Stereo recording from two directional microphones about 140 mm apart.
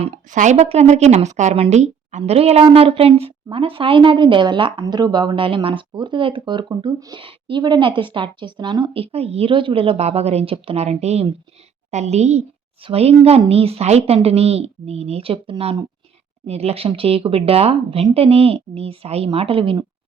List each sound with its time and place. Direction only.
0.0 s a woman's voice: 50° right (ahead or behind)